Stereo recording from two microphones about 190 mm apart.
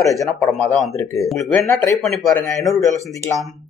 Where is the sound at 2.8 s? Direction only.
15° left (ahead or behind).